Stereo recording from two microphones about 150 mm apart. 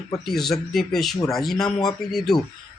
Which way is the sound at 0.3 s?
Centre (ahead or behind).